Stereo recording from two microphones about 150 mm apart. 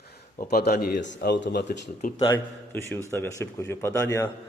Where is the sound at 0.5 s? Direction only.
90° left; by 2.2 s 60° left (ahead or behind).